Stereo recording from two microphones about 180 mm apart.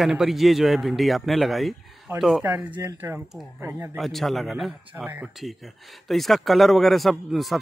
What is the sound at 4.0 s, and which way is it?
A man's voice, centre (ahead or behind).